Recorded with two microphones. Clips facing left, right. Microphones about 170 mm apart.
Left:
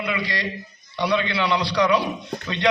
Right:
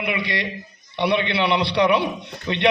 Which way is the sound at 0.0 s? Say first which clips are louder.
Right 1 dB; 25° right (ahead or behind).